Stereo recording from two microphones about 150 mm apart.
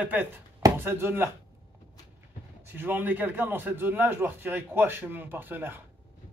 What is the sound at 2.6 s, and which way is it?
A man's voice, 15° right (ahead or behind).